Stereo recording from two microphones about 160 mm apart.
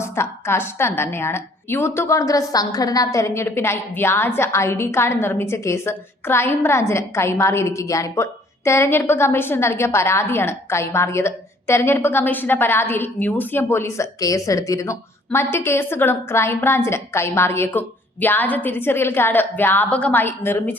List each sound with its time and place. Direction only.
0.0 s a woman's voice: 15° left (ahead or behind)